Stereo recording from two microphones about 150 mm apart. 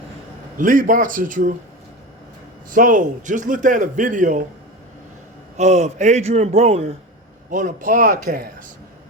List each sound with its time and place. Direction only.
0.5 s a man's voice: 65° right (ahead or behind)
2.7 s a man's voice: 60° right (ahead or behind)
5.5 s a man's voice: 50° right (ahead or behind)
7.5 s a man's voice: 60° right (ahead or behind); by 8.4 s 75° right (ahead or behind)